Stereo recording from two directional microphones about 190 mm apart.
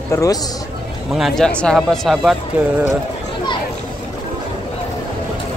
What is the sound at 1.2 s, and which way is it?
Speech, 5° left (ahead or behind).